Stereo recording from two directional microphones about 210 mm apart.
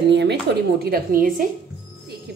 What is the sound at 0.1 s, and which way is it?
A woman's voice, 55° right (ahead or behind).